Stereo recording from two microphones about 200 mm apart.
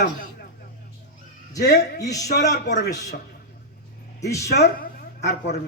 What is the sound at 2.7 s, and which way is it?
Speech, 55° left (ahead or behind).